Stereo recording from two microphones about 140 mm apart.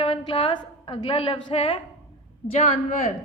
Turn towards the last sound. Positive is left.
turn(degrees=50)  # may be behind; listen again after turning